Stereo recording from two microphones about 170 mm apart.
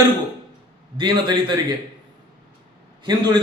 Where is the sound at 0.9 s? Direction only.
25° right (ahead or behind).